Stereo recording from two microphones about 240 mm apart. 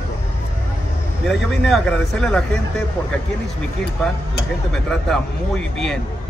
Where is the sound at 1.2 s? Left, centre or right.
Centre.